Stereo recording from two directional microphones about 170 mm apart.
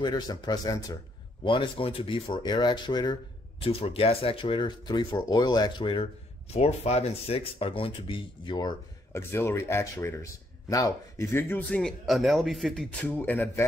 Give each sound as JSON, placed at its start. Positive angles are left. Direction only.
{"t": 0.0, "sound": "speech", "side_deg": 25}